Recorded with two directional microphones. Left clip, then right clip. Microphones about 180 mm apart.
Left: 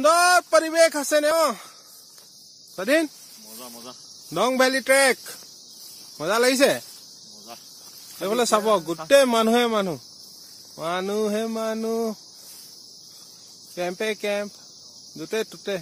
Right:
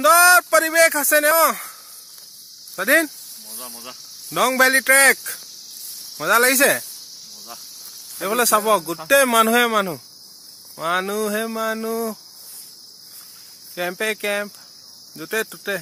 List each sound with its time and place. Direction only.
0.0 s speech: centre (ahead or behind)
2.7 s speech: centre (ahead or behind)
3.5 s speech: 20° right (ahead or behind)
4.3 s speech: centre (ahead or behind)
8.2 s speech: centre (ahead or behind)
13.7 s speech: 5° right (ahead or behind)